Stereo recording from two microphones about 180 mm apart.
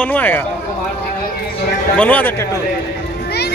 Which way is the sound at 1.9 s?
10° left (ahead or behind).